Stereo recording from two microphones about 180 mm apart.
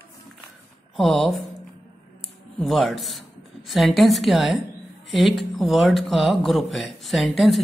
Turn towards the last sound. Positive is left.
turn(degrees=0)  # may be behind; listen again after turning